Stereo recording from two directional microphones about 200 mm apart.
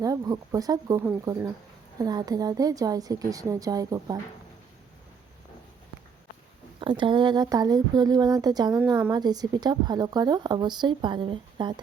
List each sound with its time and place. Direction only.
0.0 s a woman's voice: 20° right (ahead or behind)
6.7 s speech: 25° right (ahead or behind)